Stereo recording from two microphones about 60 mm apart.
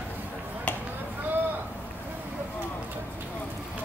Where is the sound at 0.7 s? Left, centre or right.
Left.